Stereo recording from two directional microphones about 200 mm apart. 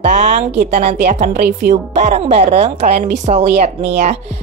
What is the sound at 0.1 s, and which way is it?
Speech, 35° right (ahead or behind).